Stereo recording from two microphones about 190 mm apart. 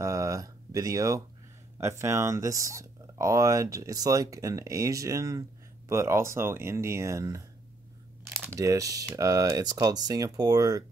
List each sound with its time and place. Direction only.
0.0 s a sound: 15° right (ahead or behind)
1.8 s speech: 15° right (ahead or behind)
8.5 s speech: 15° right (ahead or behind)